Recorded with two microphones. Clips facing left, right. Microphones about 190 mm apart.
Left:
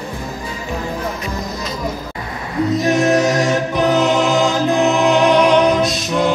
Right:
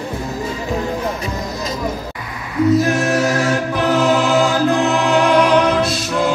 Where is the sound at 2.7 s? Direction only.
20° left (ahead or behind).